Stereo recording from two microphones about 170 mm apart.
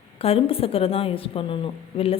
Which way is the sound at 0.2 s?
35° left (ahead or behind).